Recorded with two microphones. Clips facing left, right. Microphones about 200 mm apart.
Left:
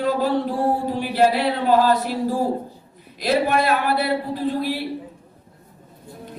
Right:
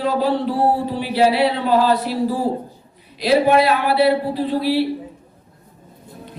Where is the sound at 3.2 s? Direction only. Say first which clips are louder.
Right 5 dB; 45° left (ahead or behind).